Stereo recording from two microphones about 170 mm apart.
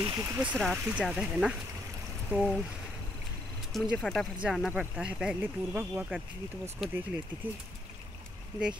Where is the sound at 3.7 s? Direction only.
Centre (ahead or behind).